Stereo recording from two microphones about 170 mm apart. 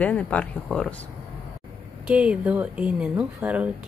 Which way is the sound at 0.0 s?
10° left (ahead or behind).